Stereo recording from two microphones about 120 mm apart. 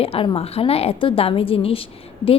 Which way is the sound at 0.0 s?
55° left (ahead or behind).